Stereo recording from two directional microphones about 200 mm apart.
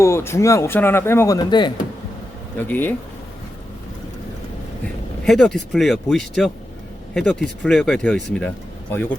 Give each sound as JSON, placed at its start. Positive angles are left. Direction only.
{"t": 0.0, "sound": "speech", "side_deg": 15}
{"t": 2.6, "sound": "speech", "side_deg": 10}
{"t": 5.2, "sound": "speech", "side_deg": 0}